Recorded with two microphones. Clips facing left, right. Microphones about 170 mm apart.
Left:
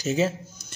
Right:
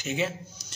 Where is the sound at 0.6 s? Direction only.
55° left (ahead or behind).